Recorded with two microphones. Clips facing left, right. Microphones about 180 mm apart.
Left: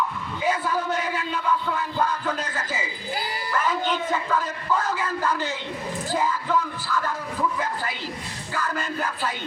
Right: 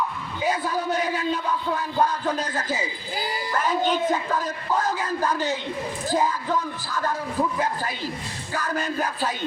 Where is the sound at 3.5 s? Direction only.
40° right (ahead or behind).